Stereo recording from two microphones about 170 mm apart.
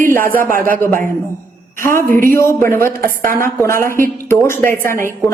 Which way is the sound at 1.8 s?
15° left (ahead or behind).